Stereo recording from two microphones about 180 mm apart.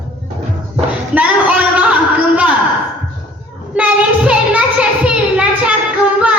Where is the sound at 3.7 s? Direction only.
5° right (ahead or behind).